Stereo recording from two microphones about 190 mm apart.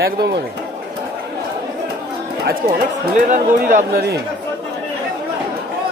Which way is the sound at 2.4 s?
60° right (ahead or behind).